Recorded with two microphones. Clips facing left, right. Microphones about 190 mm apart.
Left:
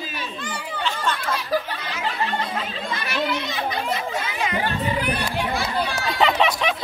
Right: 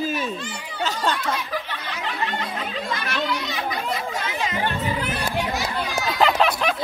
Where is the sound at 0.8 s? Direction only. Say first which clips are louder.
Right 2 dB; 40° right (ahead or behind).